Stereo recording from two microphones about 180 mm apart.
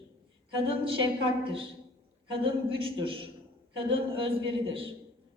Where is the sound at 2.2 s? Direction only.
30° right (ahead or behind).